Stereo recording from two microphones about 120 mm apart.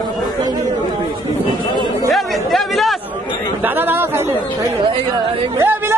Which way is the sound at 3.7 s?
20° right (ahead or behind).